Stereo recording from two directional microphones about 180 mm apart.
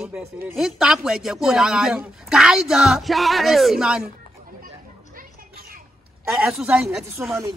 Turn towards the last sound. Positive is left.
turn(degrees=-15)  # may be behind; listen again after turning